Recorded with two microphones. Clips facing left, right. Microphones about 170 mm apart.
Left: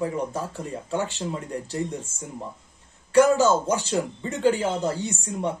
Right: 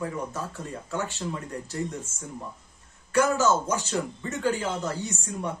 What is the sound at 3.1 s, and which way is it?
Speech, 30° left (ahead or behind).